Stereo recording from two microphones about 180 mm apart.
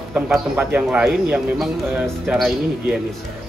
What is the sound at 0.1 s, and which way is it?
A man's voice, 5° right (ahead or behind).